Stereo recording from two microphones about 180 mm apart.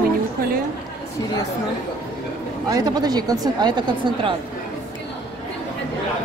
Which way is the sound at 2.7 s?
20° right (ahead or behind).